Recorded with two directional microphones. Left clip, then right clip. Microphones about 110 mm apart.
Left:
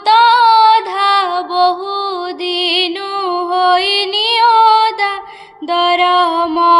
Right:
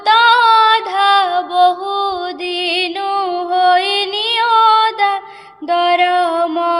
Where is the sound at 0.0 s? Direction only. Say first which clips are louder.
Left 2 dB; 35° right (ahead or behind).